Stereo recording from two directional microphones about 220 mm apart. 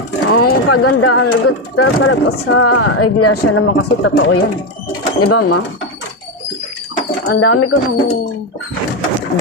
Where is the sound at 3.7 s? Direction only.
55° left (ahead or behind).